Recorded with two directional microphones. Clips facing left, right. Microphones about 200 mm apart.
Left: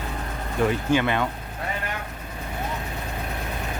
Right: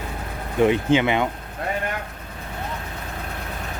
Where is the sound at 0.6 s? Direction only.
20° right (ahead or behind).